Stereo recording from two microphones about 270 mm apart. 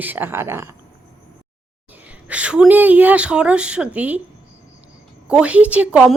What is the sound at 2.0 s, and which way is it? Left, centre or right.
Speech, centre.